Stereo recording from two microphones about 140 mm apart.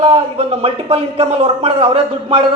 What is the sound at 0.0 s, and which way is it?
A man's voice, 45° right (ahead or behind).